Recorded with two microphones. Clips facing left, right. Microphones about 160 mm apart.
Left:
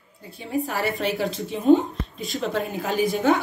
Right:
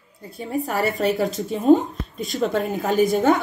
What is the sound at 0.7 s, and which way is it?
A woman's voice, 40° right (ahead or behind).